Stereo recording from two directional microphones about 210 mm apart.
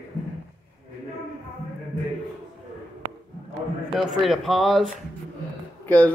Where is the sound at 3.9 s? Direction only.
Centre (ahead or behind).